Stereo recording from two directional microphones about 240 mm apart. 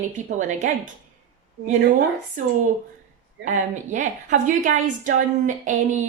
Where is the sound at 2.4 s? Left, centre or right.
Right.